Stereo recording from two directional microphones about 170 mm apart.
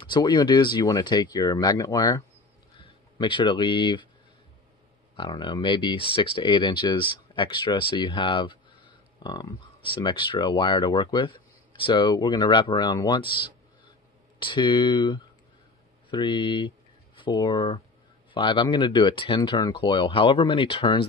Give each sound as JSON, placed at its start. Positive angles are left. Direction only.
{"t": 0.0, "sound": "speech", "side_deg": 25}
{"t": 5.1, "sound": "speech", "side_deg": 30}